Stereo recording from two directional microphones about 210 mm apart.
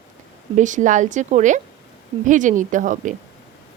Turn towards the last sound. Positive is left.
turn(degrees=-35)  # may be behind; listen again after turning